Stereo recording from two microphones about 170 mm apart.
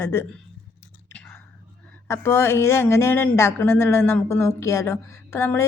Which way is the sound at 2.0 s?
15° left (ahead or behind).